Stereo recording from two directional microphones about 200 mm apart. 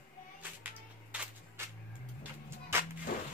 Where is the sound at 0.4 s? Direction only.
5° right (ahead or behind).